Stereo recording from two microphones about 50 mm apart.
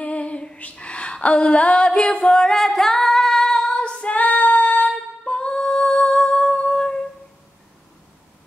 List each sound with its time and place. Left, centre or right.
0.0 s a sound: left
0.7 s female singing: left
5.2 s humming: centre